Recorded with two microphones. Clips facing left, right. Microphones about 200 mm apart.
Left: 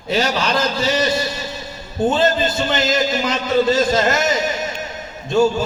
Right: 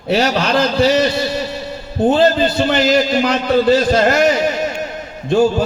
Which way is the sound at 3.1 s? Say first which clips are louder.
Right 4 dB; 60° right (ahead or behind).